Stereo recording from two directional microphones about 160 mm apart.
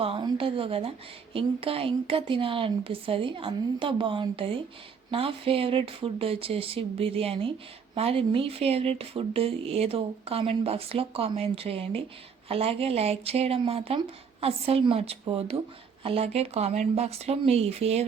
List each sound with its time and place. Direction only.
0.0 s a woman's voice: 35° right (ahead or behind)